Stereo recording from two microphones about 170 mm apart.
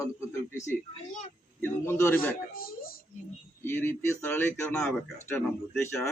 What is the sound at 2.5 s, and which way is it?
Speech, 60° left (ahead or behind).